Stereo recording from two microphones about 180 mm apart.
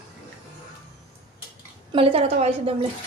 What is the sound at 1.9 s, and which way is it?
Speech, 30° right (ahead or behind).